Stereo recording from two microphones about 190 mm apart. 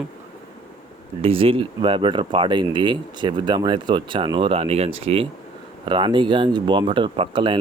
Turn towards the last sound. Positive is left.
turn(degrees=-25)  # may be behind; listen again after turning